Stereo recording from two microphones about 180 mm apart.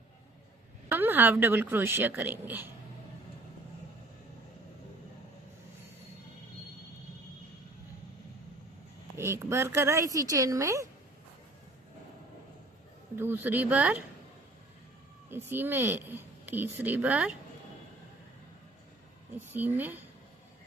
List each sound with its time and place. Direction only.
0.9 s speech: 10° right (ahead or behind)
9.1 s speech: 15° right (ahead or behind)
13.1 s speech: 10° right (ahead or behind)
15.4 s speech: 10° right (ahead or behind)
19.5 s speech: 10° right (ahead or behind)